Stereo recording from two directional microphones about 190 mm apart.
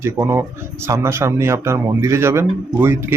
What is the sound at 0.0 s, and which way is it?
Speech, 15° right (ahead or behind).